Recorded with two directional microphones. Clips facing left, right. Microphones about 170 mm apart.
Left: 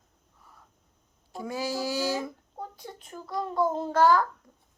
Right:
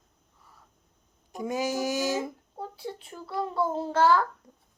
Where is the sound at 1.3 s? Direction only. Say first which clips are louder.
Right 3 dB; 20° right (ahead or behind).